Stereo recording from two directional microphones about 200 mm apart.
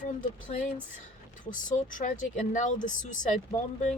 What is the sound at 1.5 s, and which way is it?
Speech, 40° left (ahead or behind).